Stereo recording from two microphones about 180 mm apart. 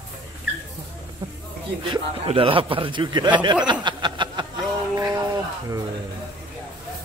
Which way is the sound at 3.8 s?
25° right (ahead or behind).